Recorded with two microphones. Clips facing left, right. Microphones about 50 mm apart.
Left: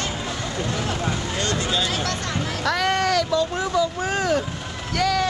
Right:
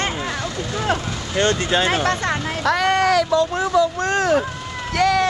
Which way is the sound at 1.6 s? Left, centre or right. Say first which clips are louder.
Right 6 dB; right.